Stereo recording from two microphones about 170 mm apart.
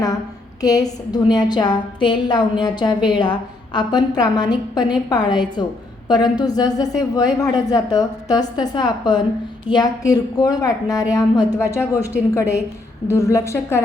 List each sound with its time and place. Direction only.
0.6 s a woman's voice: 20° left (ahead or behind)